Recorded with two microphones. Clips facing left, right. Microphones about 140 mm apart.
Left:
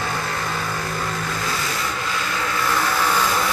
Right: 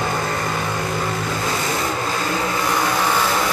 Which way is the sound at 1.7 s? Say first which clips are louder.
Right 4 dB; 40° right (ahead or behind).